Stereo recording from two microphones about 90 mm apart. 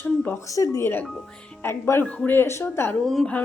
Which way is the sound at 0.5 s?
35° left (ahead or behind).